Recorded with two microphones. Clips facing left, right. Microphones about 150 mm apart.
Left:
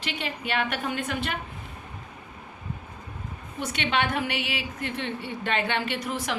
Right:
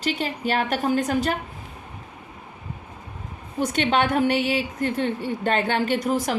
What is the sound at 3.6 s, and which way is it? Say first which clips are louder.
A woman's voice: right 6 dB; 40° right (ahead or behind).